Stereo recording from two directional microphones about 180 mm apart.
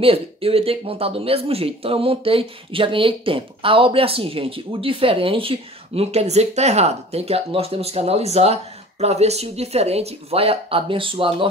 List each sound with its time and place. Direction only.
0.0 s speech: 30° right (ahead or behind)